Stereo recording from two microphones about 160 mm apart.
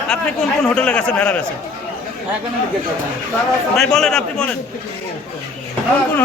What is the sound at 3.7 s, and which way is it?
Speech, centre (ahead or behind).